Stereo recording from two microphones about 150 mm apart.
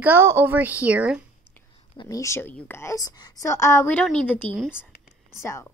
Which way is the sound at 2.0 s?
20° left (ahead or behind).